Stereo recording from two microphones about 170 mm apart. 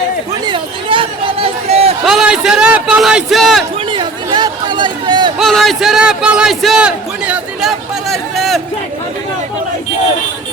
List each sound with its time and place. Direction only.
0.4 s chatter: 30° right (ahead or behind)
2.0 s a man's voice: 5° right (ahead or behind)
3.9 s a sound: 25° right (ahead or behind)
5.4 s a man's voice: centre (ahead or behind)